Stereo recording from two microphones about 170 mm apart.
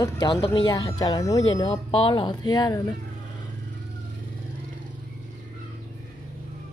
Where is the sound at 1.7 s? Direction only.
30° left (ahead or behind).